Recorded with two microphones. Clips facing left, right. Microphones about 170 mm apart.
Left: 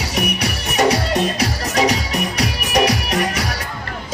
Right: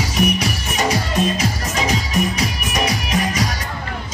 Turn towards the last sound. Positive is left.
turn(degrees=65)  # may be behind; listen again after turning